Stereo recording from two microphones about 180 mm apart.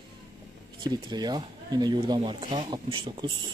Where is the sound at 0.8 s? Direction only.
25° right (ahead or behind).